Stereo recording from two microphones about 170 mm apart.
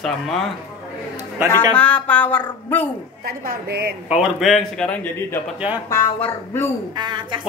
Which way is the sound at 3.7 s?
65° right (ahead or behind).